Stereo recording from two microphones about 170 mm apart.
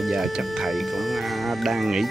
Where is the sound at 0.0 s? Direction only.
Centre (ahead or behind).